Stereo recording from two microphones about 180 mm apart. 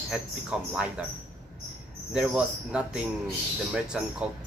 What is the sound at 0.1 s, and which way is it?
Speech, 5° right (ahead or behind).